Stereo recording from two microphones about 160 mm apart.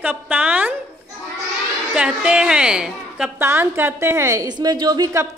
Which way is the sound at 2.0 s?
5° right (ahead or behind).